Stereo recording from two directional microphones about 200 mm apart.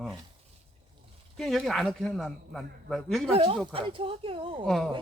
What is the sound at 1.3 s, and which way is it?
Speech, centre (ahead or behind).